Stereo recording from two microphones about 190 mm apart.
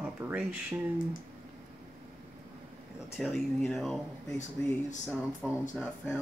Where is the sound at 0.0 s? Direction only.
5° right (ahead or behind).